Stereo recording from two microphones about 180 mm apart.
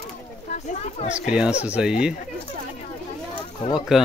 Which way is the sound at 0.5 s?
40° left (ahead or behind).